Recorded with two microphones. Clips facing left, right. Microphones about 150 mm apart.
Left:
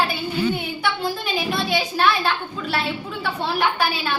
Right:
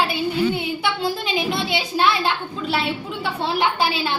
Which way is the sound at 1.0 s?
20° right (ahead or behind).